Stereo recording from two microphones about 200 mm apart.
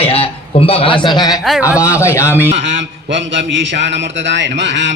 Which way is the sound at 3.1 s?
65° right (ahead or behind).